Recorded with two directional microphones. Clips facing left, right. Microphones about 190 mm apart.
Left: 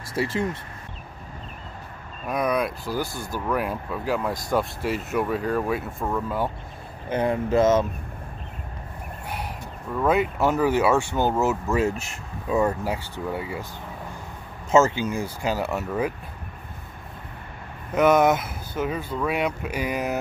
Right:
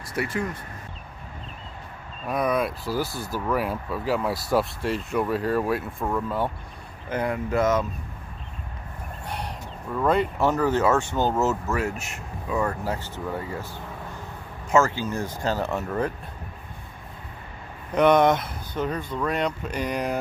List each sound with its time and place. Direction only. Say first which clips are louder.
0.1 s speech: left 2 dB; 30° left (ahead or behind)
2.2 s speech: even; centre (ahead or behind)
7.1 s speech: left 3 dB; 25° left (ahead or behind)
9.3 s speech: even; 5° left (ahead or behind)
12.0 s speech: even; 25° left (ahead or behind); by 13.7 s 10° left (ahead or behind)
14.7 s speech: left 2 dB; 20° left (ahead or behind)
17.9 s speech: even; 5° left (ahead or behind)